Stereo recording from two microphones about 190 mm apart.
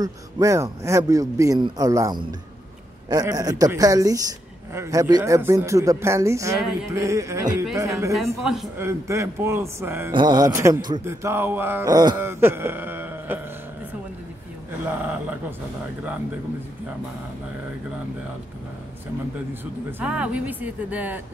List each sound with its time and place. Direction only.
0.0 s speech: 15° right (ahead or behind)
8.1 s speech: centre (ahead or behind)
8.7 s speech: 15° right (ahead or behind)
19.6 s speech: 10° right (ahead or behind)